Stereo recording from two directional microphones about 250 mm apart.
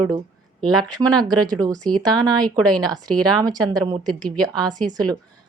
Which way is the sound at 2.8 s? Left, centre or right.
Centre.